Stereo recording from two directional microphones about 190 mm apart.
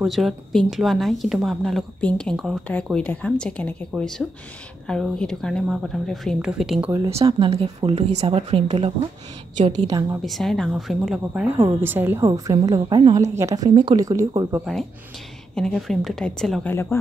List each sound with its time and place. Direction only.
0.0 s a woman's voice: centre (ahead or behind)
7.2 s a woman's voice: 25° right (ahead or behind)
9.8 s a woman's voice: 20° right (ahead or behind)
10.2 s a woman's voice: centre (ahead or behind); by 14.6 s 15° right (ahead or behind)
14.6 s a woman's voice: centre (ahead or behind)